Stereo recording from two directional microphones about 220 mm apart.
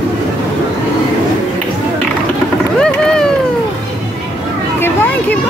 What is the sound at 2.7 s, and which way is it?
Mechanisms, 5° left (ahead or behind).